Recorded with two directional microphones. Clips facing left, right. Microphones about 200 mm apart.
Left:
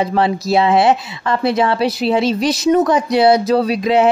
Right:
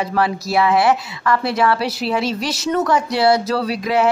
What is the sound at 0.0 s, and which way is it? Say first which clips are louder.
Speech: left 4 dB; 25° left (ahead or behind).